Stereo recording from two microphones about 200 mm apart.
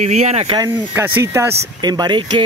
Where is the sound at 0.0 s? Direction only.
35° right (ahead or behind).